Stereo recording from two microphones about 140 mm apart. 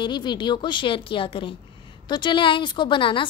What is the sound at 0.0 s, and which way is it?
A woman's voice, 35° left (ahead or behind).